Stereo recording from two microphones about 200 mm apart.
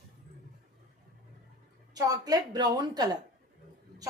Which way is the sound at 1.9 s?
20° right (ahead or behind).